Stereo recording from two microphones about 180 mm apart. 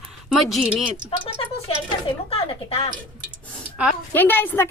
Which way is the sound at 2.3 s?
30° left (ahead or behind).